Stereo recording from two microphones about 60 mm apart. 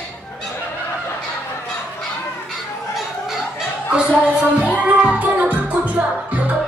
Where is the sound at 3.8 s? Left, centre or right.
Centre.